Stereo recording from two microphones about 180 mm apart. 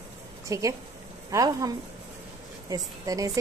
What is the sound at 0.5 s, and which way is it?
A woman's voice, 15° right (ahead or behind).